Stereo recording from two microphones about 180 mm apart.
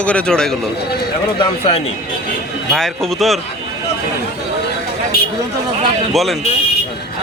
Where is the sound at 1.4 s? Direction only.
30° left (ahead or behind).